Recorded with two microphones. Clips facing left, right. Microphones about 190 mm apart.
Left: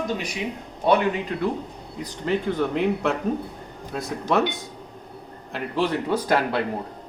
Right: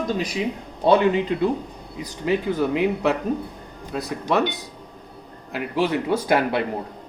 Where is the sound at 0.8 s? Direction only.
25° right (ahead or behind).